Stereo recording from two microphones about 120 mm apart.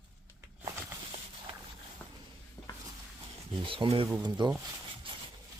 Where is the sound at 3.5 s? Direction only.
45° right (ahead or behind).